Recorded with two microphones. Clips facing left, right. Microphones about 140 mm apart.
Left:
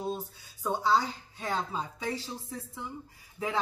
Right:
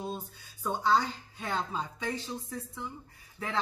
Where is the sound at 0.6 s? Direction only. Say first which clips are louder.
Even; 5° left (ahead or behind).